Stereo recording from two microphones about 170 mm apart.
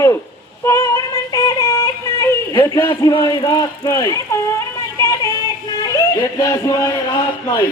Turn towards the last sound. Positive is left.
turn(degrees=20)  # may be behind; listen again after turning